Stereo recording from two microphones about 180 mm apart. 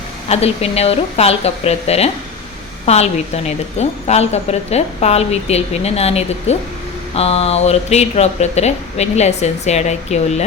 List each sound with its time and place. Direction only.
0.3 s a woman's voice: 35° left (ahead or behind)